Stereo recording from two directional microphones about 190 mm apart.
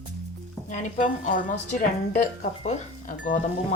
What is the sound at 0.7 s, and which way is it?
A woman's voice, 40° left (ahead or behind).